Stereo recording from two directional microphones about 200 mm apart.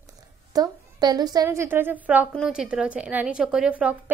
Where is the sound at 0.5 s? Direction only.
20° right (ahead or behind).